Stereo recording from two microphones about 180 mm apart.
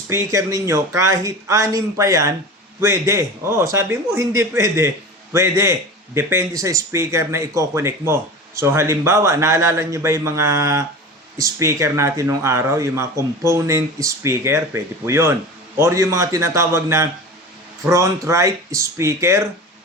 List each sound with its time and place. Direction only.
0.1 s speech: 15° right (ahead or behind)